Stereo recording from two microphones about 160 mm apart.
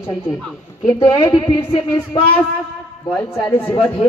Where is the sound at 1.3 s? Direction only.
35° left (ahead or behind).